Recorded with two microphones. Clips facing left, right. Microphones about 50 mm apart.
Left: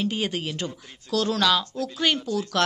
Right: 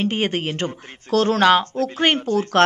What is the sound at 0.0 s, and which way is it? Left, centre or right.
Speech, right.